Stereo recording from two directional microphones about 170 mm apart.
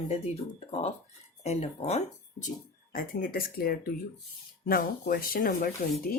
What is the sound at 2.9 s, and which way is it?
Speech, 55° left (ahead or behind).